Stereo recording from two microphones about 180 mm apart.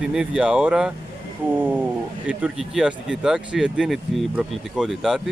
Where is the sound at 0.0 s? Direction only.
5° right (ahead or behind).